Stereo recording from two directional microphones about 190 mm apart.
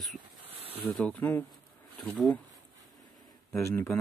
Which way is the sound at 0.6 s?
30° right (ahead or behind).